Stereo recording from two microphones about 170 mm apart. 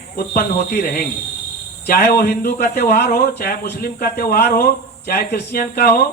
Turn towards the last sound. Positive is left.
turn(degrees=65)  # may be behind; listen again after turning